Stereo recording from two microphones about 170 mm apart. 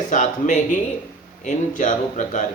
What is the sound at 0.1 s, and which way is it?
Speech, 45° left (ahead or behind).